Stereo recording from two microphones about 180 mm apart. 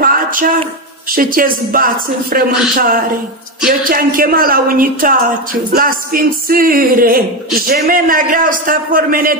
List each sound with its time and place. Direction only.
0.0 s a sound: 50° right (ahead or behind)
1.1 s speech: 50° right (ahead or behind)
3.6 s speech: 50° right (ahead or behind)